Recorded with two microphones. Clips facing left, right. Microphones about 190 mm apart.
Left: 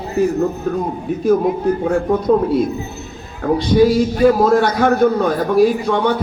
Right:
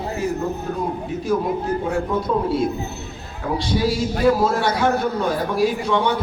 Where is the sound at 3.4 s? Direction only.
50° left (ahead or behind).